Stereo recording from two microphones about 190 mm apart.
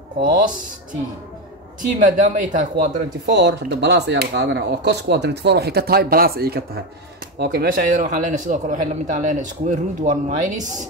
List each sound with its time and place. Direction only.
0.2 s a man's voice: 45° right (ahead or behind)
2.0 s a man's voice: 45° right (ahead or behind)
3.3 s a man's voice: 65° right (ahead or behind); by 10.6 s 40° right (ahead or behind)